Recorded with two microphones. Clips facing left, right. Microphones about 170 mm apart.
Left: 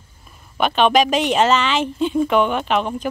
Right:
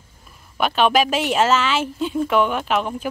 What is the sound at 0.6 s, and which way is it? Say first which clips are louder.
Speech: left 2 dB; 5° right (ahead or behind).